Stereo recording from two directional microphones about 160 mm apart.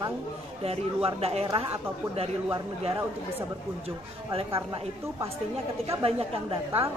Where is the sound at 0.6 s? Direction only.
40° right (ahead or behind).